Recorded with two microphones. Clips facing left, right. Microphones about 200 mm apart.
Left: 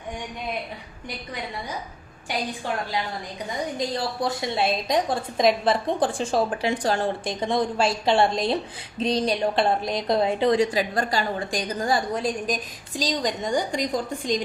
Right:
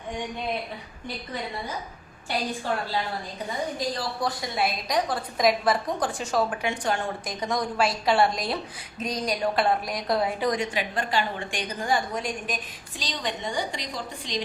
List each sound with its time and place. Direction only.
3.8 s a woman's voice: 25° left (ahead or behind); by 14.4 s 45° left (ahead or behind)